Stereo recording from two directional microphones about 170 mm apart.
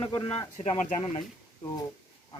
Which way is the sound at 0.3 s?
35° left (ahead or behind).